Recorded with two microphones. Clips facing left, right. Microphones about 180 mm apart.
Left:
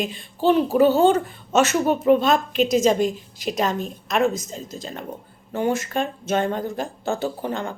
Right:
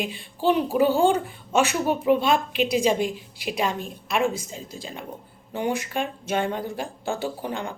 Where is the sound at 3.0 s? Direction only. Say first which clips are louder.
Left 4 dB; 40° left (ahead or behind).